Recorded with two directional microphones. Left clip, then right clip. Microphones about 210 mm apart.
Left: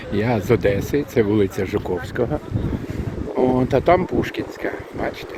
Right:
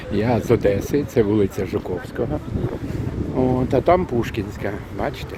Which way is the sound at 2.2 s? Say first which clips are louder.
Left 3 dB; 5° left (ahead or behind).